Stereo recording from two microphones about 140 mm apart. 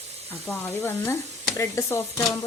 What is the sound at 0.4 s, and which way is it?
Speech, 15° left (ahead or behind).